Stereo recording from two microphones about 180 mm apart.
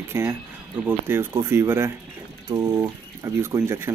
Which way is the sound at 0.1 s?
15° right (ahead or behind).